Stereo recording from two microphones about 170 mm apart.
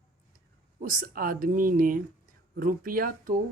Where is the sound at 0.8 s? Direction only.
55° right (ahead or behind).